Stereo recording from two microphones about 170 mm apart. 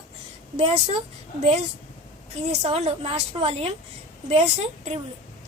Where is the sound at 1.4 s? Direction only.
40° right (ahead or behind).